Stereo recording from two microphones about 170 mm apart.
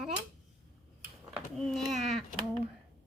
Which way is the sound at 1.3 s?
Centre (ahead or behind).